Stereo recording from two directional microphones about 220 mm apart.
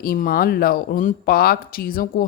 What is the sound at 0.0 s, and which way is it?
Speech, 40° left (ahead or behind).